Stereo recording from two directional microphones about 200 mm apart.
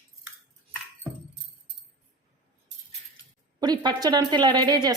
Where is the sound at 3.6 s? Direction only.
20° right (ahead or behind).